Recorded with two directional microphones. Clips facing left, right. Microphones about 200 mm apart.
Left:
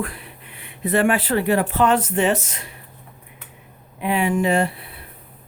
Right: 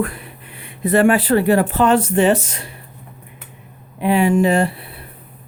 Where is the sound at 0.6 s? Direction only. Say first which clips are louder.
Right 5 dB; 40° right (ahead or behind).